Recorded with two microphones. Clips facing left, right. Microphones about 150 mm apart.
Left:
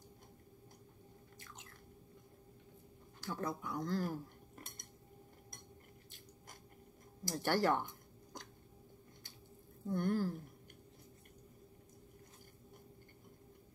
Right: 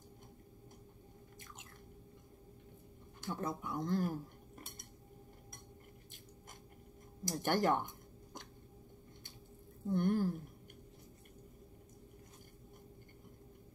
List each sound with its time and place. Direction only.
3.2 s speech: 20° right (ahead or behind)
7.2 s a sound: 20° right (ahead or behind)
9.8 s speech: 20° right (ahead or behind)